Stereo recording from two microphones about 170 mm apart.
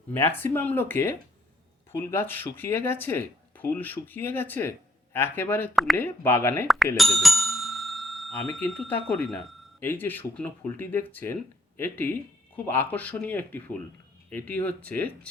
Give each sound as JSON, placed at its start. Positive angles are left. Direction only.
{"t": 0.1, "sound": "speech", "side_deg": 10}
{"t": 5.7, "sound": "speech", "side_deg": 0}
{"t": 6.0, "sound": "speech", "side_deg": 10}
{"t": 6.9, "sound": "bicycle bell", "side_deg": 0}
{"t": 8.5, "sound": "speech", "side_deg": 5}